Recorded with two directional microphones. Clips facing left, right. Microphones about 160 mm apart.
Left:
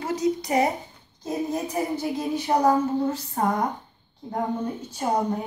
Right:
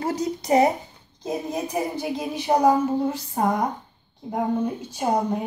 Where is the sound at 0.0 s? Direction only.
30° right (ahead or behind).